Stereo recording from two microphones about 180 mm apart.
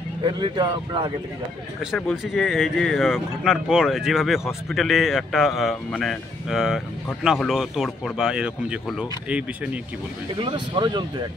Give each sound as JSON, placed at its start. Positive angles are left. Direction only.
{"t": 0.2, "sound": "speech", "side_deg": -25}
{"t": 1.8, "sound": "speech", "side_deg": 0}
{"t": 10.4, "sound": "speech", "side_deg": -25}